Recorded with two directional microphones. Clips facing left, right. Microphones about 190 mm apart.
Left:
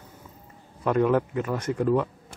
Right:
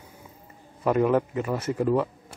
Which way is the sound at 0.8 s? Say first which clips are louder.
Even; 5° right (ahead or behind).